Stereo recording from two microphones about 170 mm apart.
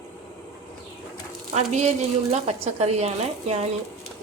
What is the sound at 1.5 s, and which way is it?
A woman's voice, 40° right (ahead or behind).